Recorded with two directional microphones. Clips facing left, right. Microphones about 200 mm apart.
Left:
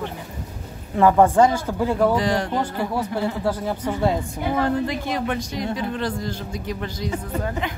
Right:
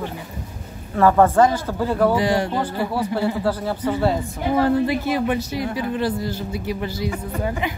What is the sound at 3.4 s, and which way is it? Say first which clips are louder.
Speech: right 1 dB; 15° left (ahead or behind).